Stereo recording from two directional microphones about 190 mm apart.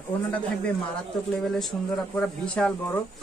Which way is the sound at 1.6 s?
Centre (ahead or behind).